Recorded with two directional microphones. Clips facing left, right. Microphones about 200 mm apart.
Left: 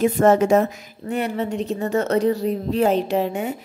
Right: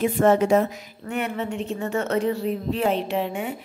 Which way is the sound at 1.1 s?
35° left (ahead or behind).